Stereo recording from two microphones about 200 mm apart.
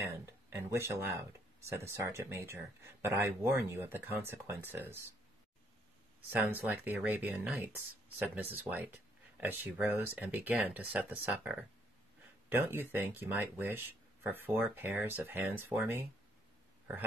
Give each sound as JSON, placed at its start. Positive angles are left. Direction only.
{"t": 0.0, "sound": "speech", "side_deg": -15}
{"t": 6.3, "sound": "speech", "side_deg": -10}